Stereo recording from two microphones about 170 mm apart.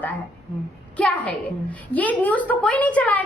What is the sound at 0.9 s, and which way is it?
A woman's voice, 10° left (ahead or behind).